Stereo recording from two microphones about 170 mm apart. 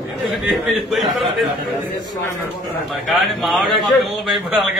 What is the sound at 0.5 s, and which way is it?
Speech, centre (ahead or behind).